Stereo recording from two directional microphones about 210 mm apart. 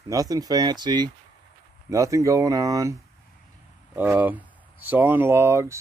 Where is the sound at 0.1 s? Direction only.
15° right (ahead or behind).